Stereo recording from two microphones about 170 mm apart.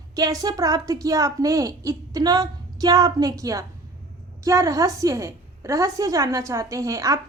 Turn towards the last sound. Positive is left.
turn(degrees=-20)  # may be behind; listen again after turning